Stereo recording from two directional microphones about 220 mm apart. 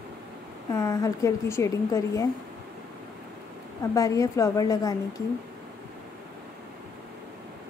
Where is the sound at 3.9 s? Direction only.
15° left (ahead or behind).